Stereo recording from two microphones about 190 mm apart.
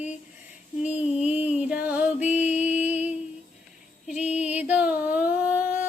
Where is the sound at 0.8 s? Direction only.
35° left (ahead or behind).